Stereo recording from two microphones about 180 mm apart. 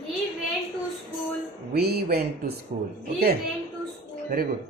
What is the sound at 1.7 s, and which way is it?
Speech, 60° right (ahead or behind).